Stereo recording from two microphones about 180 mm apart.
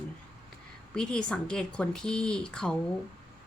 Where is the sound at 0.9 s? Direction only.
5° left (ahead or behind).